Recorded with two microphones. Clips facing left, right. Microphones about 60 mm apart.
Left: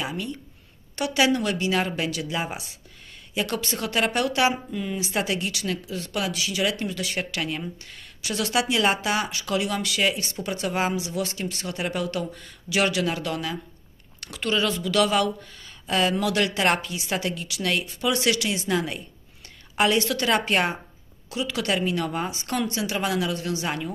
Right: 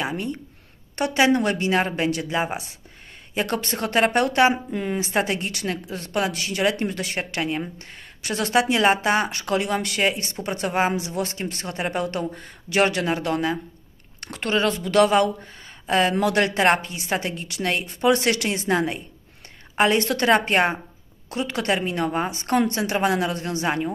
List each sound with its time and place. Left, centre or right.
0.0 s a woman's voice: right
21.3 s speech: right